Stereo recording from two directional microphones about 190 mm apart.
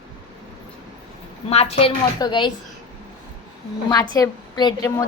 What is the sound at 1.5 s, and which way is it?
A woman's voice, 30° left (ahead or behind).